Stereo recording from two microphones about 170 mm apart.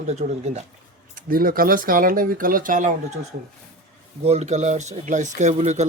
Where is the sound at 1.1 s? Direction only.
60° right (ahead or behind).